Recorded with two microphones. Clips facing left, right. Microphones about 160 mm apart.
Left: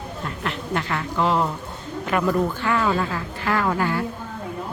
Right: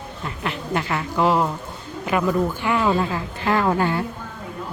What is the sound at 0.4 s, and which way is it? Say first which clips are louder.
A man's voice: right 2 dB; 10° right (ahead or behind).